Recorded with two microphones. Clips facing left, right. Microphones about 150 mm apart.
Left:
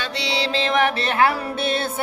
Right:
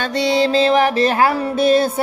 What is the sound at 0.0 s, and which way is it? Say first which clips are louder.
Music: right 9 dB; 50° right (ahead or behind).